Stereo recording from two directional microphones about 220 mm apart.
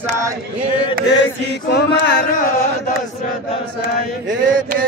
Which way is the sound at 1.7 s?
45° left (ahead or behind).